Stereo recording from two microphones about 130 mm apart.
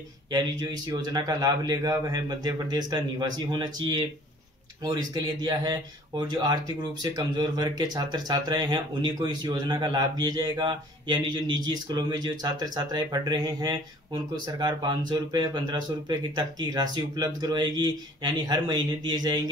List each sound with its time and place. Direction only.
0.3 s speech: 30° right (ahead or behind)